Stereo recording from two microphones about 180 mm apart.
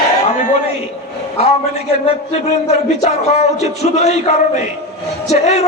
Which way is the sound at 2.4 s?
40° left (ahead or behind).